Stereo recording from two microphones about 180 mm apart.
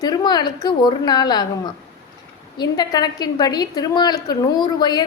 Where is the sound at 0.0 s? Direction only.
20° left (ahead or behind).